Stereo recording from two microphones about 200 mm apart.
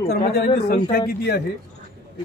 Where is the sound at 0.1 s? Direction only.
50° left (ahead or behind).